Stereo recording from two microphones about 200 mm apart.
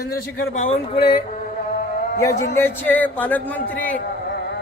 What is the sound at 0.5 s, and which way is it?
Speech, 35° left (ahead or behind).